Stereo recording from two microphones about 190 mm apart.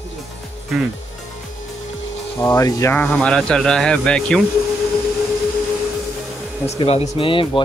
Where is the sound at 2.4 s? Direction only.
15° left (ahead or behind).